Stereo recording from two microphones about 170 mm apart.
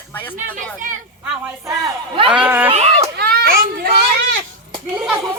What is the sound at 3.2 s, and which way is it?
Children playing, 60° right (ahead or behind).